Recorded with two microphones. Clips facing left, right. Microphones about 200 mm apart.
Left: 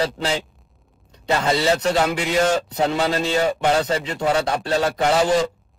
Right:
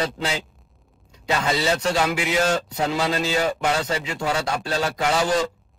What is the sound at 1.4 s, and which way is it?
Speech, 30° left (ahead or behind).